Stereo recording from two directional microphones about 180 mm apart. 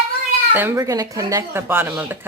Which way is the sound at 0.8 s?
20° right (ahead or behind).